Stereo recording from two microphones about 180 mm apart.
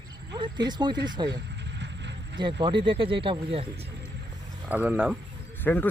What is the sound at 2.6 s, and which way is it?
Speech, 30° right (ahead or behind).